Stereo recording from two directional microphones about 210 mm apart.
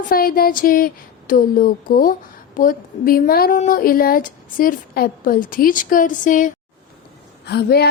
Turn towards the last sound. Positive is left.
turn(degrees=50)  # may be behind; listen again after turning